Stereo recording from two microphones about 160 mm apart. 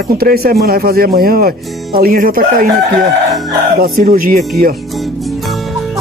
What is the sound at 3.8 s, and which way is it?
Speech, 60° right (ahead or behind).